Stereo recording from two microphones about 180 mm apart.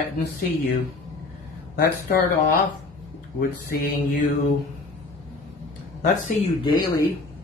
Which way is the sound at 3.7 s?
55° left (ahead or behind).